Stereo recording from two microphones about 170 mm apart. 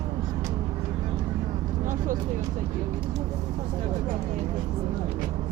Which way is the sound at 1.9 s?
50° right (ahead or behind).